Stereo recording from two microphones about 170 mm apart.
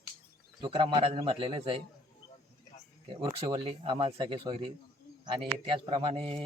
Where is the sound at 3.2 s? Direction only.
25° right (ahead or behind).